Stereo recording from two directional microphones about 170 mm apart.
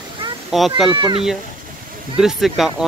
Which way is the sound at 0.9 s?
30° right (ahead or behind).